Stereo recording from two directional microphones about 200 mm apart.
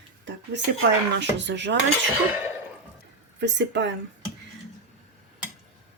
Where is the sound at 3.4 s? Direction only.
60° right (ahead or behind).